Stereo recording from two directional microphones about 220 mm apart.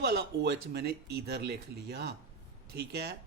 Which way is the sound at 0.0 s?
45° right (ahead or behind).